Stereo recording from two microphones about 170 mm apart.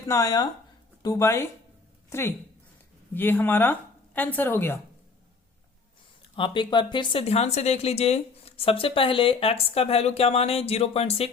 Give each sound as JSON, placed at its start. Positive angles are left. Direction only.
{"t": 0.1, "sound": "a woman's voice", "side_deg": 20}
{"t": 6.3, "sound": "speech", "side_deg": 30}